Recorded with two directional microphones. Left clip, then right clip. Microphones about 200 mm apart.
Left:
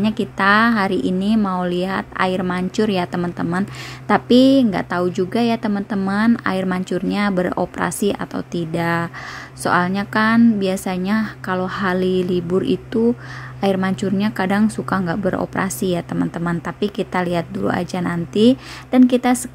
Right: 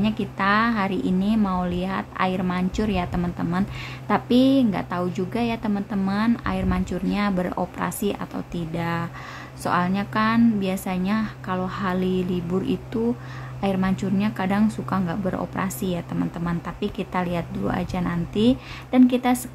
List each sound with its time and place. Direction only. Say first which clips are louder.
0.0 s speech: left 6 dB; 25° left (ahead or behind)